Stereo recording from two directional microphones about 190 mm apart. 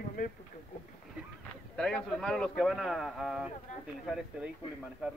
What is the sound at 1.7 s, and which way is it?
A man's voice, 5° left (ahead or behind).